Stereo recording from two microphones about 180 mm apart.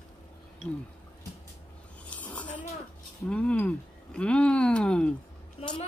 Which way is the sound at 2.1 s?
10° left (ahead or behind).